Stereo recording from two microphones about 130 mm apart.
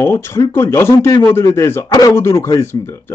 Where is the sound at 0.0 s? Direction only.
20° left (ahead or behind).